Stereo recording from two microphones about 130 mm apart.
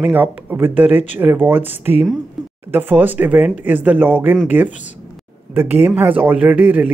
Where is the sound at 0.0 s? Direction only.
15° right (ahead or behind).